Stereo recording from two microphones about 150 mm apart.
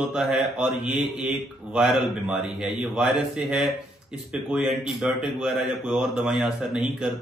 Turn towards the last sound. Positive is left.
turn(degrees=-5)  # may be behind; listen again after turning